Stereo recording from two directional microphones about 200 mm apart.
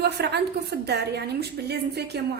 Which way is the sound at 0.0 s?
55° right (ahead or behind).